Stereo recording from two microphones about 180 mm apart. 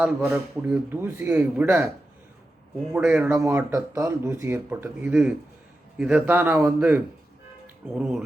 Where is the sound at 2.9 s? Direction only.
10° right (ahead or behind).